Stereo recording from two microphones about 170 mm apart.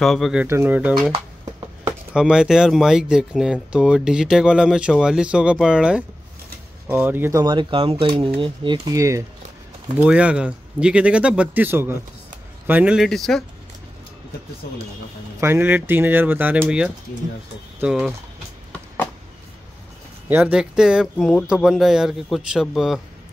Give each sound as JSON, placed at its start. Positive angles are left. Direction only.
{"t": 0.0, "sound": "speech", "side_deg": 0}
{"t": 2.1, "sound": "speech", "side_deg": -5}
{"t": 9.9, "sound": "speech", "side_deg": -5}
{"t": 15.4, "sound": "speech", "side_deg": -15}
{"t": 20.2, "sound": "speech", "side_deg": -10}